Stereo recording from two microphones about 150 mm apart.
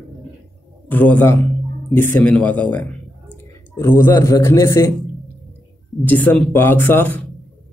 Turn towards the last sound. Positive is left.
turn(degrees=15)  # may be behind; listen again after turning